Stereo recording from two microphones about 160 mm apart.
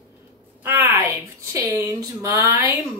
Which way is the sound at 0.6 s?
10° right (ahead or behind).